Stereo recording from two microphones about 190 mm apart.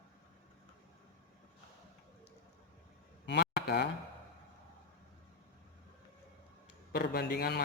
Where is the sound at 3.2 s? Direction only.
65° left (ahead or behind).